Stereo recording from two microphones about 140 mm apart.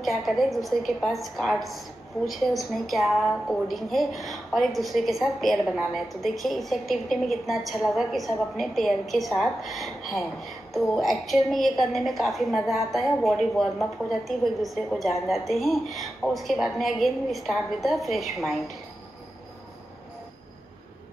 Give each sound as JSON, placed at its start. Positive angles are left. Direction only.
{"t": 0.0, "sound": "a woman's voice", "side_deg": 0}